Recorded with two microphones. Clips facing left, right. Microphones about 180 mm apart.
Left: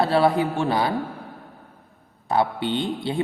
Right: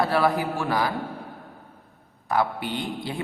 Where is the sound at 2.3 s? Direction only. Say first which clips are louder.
Left 3 dB; 25° left (ahead or behind).